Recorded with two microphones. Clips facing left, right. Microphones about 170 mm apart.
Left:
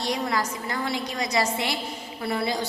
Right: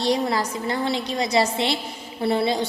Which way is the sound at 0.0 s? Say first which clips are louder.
Right 5 dB; 30° right (ahead or behind).